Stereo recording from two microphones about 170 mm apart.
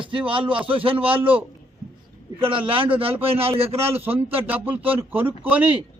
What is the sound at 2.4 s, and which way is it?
A man's voice, 30° right (ahead or behind).